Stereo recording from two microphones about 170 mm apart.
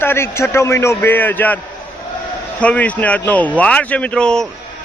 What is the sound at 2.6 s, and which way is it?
Speech, 10° left (ahead or behind).